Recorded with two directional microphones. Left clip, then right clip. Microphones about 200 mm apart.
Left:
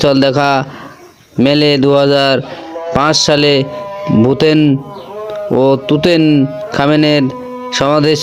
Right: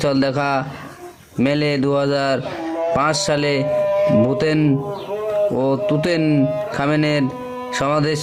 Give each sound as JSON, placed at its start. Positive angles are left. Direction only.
{"t": 0.0, "sound": "speech", "side_deg": 25}